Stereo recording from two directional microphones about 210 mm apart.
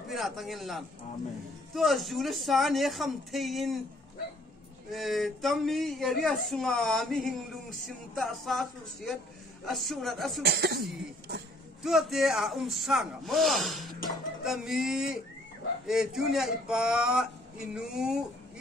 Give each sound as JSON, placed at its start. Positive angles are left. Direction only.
{"t": 0.1, "sound": "speech", "side_deg": 0}
{"t": 4.9, "sound": "speech", "side_deg": 0}
{"t": 10.4, "sound": "speech", "side_deg": -50}
{"t": 11.8, "sound": "speech", "side_deg": 0}